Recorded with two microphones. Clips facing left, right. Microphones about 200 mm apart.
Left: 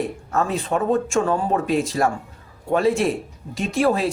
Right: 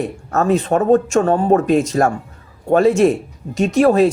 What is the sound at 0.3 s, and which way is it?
Speech, 45° right (ahead or behind).